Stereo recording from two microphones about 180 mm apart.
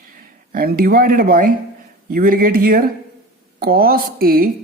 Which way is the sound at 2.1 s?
55° right (ahead or behind).